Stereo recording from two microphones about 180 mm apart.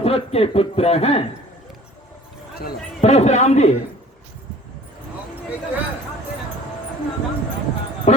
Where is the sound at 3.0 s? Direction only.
35° left (ahead or behind).